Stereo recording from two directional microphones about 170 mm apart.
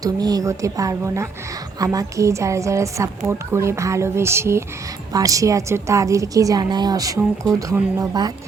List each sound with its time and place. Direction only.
0.0 s a woman's voice: 20° right (ahead or behind)